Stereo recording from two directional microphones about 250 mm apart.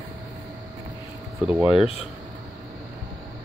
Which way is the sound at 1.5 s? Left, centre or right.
Centre.